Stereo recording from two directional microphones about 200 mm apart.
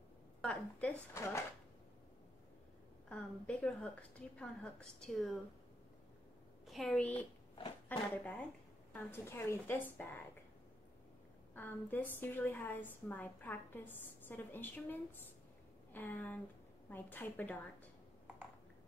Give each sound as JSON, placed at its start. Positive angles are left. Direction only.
{"t": 0.4, "sound": "a woman's voice", "side_deg": 5}
{"t": 3.1, "sound": "a woman's voice", "side_deg": 5}
{"t": 6.7, "sound": "a woman's voice", "side_deg": 0}
{"t": 7.5, "sound": "speech", "side_deg": 25}
{"t": 8.1, "sound": "a woman's voice", "side_deg": 10}
{"t": 11.5, "sound": "a woman's voice", "side_deg": 10}